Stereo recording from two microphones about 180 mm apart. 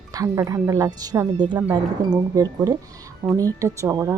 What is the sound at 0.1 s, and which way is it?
Speech, 20° right (ahead or behind).